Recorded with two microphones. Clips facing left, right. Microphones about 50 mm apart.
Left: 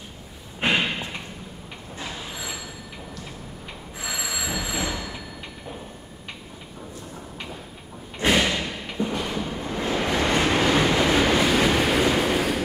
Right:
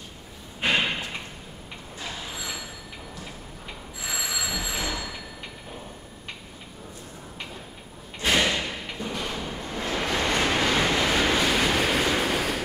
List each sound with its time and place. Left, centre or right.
0.7 s a sound: centre
2.0 s train: centre
4.1 s telephone: centre
8.4 s thump: centre
8.9 s train: centre